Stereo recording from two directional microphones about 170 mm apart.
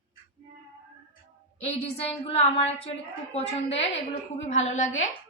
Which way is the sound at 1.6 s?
35° left (ahead or behind).